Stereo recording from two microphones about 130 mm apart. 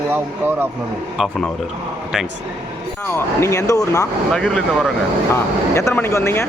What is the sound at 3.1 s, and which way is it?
Speech, 20° left (ahead or behind).